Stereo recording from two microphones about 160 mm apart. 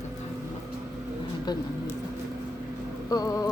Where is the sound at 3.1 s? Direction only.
20° left (ahead or behind).